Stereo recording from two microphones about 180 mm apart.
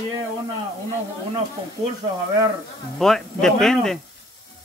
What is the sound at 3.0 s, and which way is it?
Speech, centre (ahead or behind).